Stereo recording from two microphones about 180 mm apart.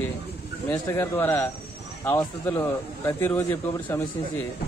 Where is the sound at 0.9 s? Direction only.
15° left (ahead or behind).